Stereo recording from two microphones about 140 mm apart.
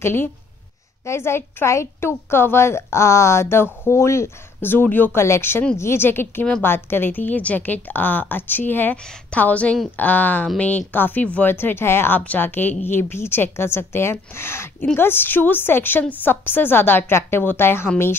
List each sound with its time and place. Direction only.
0.0 s a woman's voice: 15° left (ahead or behind)